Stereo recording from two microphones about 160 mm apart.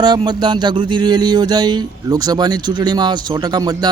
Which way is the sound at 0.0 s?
25° right (ahead or behind).